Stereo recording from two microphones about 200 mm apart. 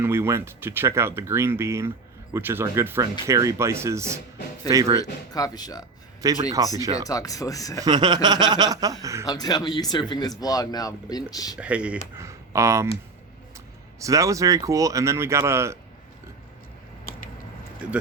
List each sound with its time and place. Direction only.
0.0 s speech: 10° right (ahead or behind)
5.3 s speech: 20° left (ahead or behind)
6.2 s speech: 15° right (ahead or behind)
7.1 s speech: 15° left (ahead or behind)
7.8 s speech: 20° right (ahead or behind)
9.2 s speech: 20° left (ahead or behind)
11.5 s speech: 5° right (ahead or behind)
14.0 s speech: 15° right (ahead or behind)
17.8 s speech: 5° right (ahead or behind)